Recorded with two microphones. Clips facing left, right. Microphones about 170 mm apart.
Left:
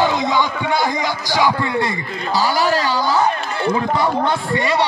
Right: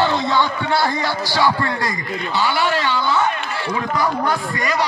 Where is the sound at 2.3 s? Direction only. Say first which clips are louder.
Left 3 dB; 40° left (ahead or behind).